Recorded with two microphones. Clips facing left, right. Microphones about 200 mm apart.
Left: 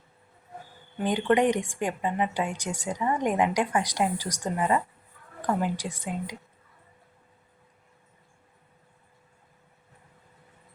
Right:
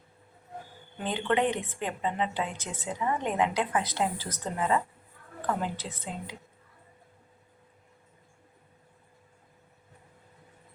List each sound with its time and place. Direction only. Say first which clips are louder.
0.9 s a woman's voice: left 5 dB; 15° left (ahead or behind)